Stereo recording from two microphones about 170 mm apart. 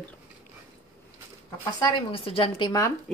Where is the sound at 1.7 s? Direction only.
30° left (ahead or behind).